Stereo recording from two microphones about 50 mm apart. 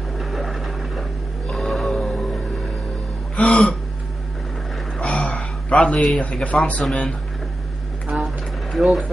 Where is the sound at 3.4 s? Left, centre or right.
Left.